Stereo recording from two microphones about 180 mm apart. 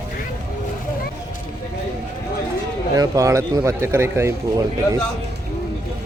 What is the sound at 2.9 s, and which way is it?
A man's voice, 20° right (ahead or behind).